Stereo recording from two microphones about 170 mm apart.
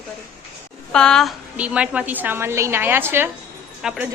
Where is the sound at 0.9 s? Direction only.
5° left (ahead or behind).